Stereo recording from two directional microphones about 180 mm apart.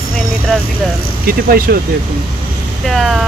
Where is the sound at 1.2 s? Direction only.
55° right (ahead or behind).